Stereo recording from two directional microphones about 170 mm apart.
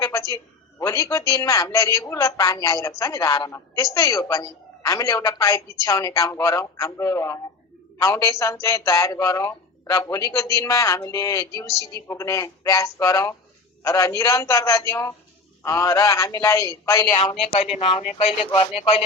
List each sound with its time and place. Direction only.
0.0 s a woman's voice: 20° left (ahead or behind)
17.4 s speech: 35° left (ahead or behind)